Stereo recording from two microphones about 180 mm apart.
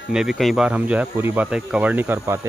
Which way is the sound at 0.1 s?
5° right (ahead or behind).